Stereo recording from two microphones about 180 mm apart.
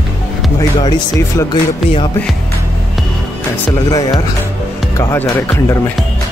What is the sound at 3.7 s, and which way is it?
Speech, 20° left (ahead or behind).